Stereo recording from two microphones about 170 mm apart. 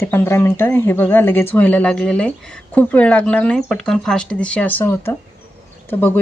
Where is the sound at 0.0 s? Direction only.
15° left (ahead or behind).